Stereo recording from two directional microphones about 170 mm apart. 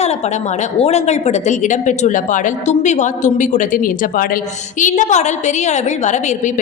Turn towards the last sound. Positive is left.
turn(degrees=45)  # may be behind; listen again after turning